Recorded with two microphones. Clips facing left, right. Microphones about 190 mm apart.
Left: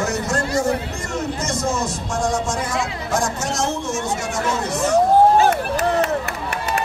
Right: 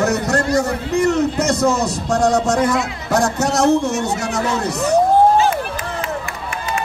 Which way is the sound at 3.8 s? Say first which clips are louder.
Right 5 dB; 35° right (ahead or behind).